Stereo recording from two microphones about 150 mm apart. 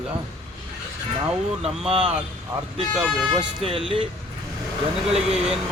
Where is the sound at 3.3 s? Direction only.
40° right (ahead or behind).